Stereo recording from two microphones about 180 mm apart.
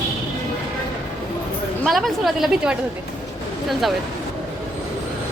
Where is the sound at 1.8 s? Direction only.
Centre (ahead or behind).